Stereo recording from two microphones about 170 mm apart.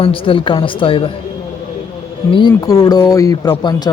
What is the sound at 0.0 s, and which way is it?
A woman's voice, 30° left (ahead or behind).